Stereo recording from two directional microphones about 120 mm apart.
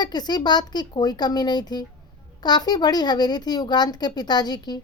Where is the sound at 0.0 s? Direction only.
35° left (ahead or behind).